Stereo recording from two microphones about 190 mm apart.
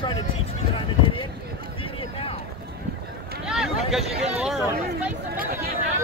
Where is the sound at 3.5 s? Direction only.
Centre (ahead or behind).